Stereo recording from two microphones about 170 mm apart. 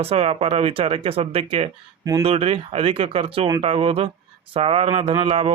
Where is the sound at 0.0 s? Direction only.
35° right (ahead or behind).